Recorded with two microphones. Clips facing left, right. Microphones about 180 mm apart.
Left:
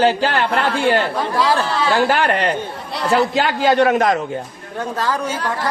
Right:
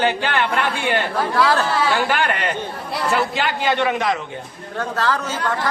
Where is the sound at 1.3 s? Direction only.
10° left (ahead or behind).